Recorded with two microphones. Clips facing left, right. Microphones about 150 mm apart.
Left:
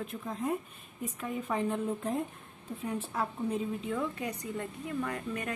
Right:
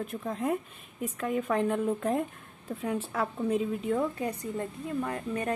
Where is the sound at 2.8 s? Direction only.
90° right.